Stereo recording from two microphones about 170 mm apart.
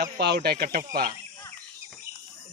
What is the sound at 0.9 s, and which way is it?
Speech, 55° right (ahead or behind).